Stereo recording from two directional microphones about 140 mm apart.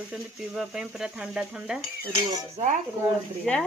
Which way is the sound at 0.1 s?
5° right (ahead or behind).